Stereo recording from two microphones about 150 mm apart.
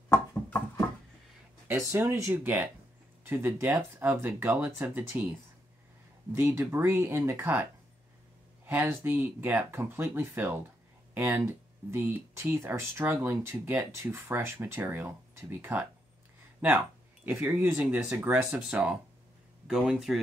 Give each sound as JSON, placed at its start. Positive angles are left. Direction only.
{"t": 0.3, "sound": "a sound", "side_deg": 20}
{"t": 1.7, "sound": "speech", "side_deg": -15}
{"t": 6.3, "sound": "speech", "side_deg": -15}
{"t": 8.6, "sound": "speech", "side_deg": -15}